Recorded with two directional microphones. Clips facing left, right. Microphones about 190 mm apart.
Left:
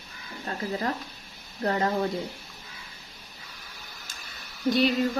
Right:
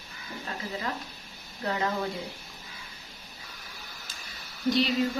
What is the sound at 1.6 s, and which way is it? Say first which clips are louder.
Speech: left 4 dB; 40° left (ahead or behind).